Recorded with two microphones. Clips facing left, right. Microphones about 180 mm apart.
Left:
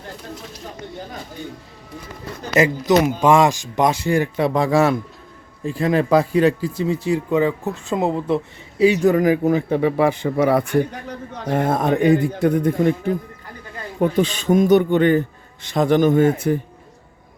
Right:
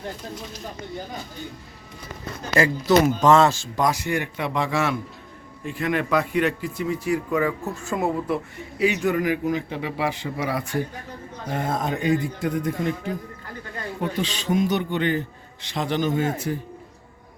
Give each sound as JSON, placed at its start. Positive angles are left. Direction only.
{"t": 2.6, "sound": "speech", "side_deg": 20}
{"t": 8.8, "sound": "a man's voice", "side_deg": 35}
{"t": 14.0, "sound": "a man's voice", "side_deg": 50}